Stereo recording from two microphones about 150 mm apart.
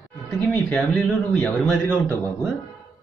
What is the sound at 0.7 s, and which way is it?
Speech, 5° left (ahead or behind).